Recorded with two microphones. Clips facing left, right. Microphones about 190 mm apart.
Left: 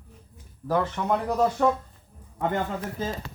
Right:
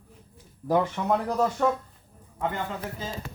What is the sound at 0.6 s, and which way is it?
Speech, 15° right (ahead or behind).